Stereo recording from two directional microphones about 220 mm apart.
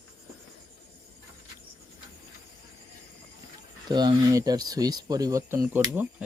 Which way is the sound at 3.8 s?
20° right (ahead or behind).